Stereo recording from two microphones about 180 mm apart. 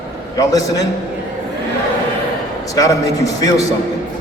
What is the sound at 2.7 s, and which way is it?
Speech, 20° left (ahead or behind).